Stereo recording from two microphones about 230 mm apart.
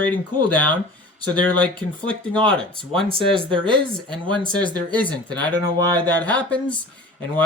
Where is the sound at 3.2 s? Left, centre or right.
Right.